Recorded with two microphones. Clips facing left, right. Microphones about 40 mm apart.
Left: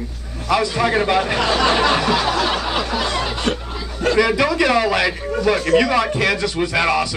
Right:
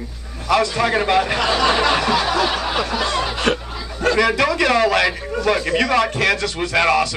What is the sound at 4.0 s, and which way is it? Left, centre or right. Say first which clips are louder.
Speech: even; centre.